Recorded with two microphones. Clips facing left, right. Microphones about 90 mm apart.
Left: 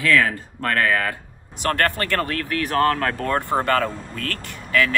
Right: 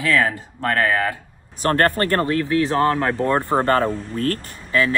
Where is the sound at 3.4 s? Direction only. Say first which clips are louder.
Right 2 dB; 35° right (ahead or behind).